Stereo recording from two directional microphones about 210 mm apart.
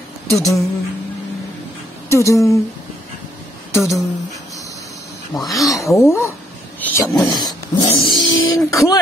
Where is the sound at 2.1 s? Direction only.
15° left (ahead or behind).